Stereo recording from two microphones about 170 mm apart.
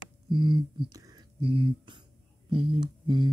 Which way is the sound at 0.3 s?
30° right (ahead or behind).